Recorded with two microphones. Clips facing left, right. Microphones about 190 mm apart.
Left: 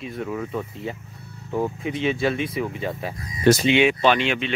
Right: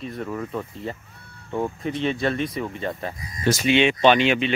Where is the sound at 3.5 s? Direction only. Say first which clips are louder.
Left 6 dB; 65° left (ahead or behind).